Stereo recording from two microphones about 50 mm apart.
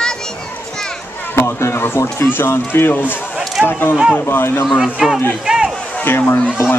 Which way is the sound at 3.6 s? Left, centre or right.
Centre.